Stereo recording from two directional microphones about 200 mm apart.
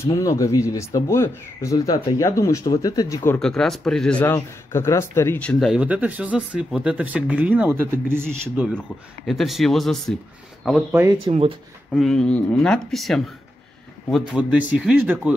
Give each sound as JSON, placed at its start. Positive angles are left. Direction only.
{"t": 0.0, "sound": "speech", "side_deg": 15}
{"t": 3.3, "sound": "speech", "side_deg": 0}
{"t": 8.7, "sound": "speech", "side_deg": 0}
{"t": 10.9, "sound": "speech", "side_deg": -10}
{"t": 11.2, "sound": "speech", "side_deg": -30}
{"t": 11.9, "sound": "speech", "side_deg": 0}